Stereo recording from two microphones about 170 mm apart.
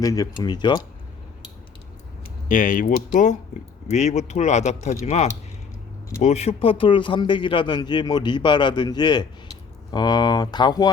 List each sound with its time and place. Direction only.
0.0 s a man's voice: 20° left (ahead or behind)
2.5 s a man's voice: 50° left (ahead or behind); by 10.9 s 25° left (ahead or behind)